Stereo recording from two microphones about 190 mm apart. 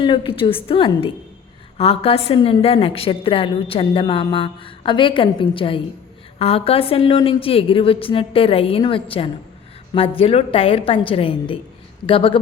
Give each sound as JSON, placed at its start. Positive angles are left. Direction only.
{"t": 0.0, "sound": "a woman's voice", "side_deg": 25}